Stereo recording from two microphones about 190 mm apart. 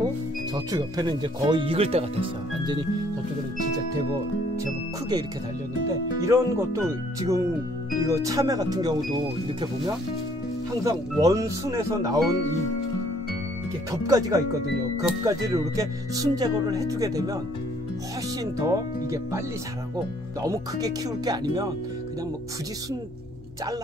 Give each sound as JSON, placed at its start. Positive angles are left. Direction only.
{"t": 0.7, "sound": "speech", "side_deg": -20}
{"t": 5.9, "sound": "speech", "side_deg": -15}
{"t": 10.8, "sound": "speech", "side_deg": -20}
{"t": 14.0, "sound": "speech", "side_deg": -20}
{"t": 18.4, "sound": "speech", "side_deg": -20}
{"t": 20.4, "sound": "speech", "side_deg": -20}